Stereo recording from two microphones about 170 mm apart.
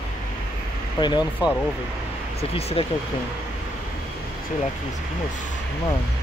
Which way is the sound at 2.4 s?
35° left (ahead or behind).